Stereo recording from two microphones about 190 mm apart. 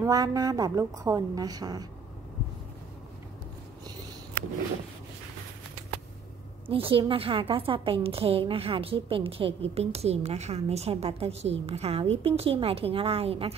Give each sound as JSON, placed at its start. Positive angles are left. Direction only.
{"t": 0.0, "sound": "a woman's voice", "side_deg": -20}
{"t": 6.7, "sound": "a woman's voice", "side_deg": -30}